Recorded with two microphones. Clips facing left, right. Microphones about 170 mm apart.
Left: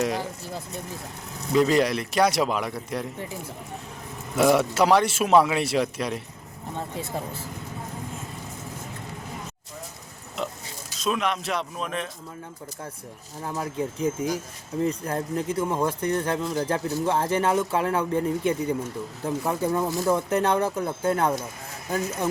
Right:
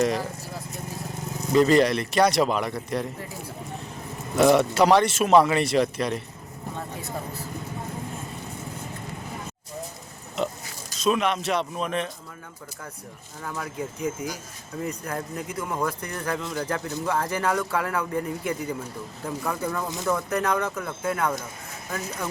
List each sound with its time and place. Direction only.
0.0 s speech: centre (ahead or behind)
1.5 s speech: 5° left (ahead or behind)
4.4 s speech: 5° left (ahead or behind)
10.3 s speech: centre (ahead or behind)
13.6 s speech: 30° left (ahead or behind)